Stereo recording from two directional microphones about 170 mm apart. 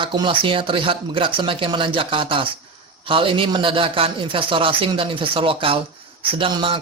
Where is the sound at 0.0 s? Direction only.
30° right (ahead or behind).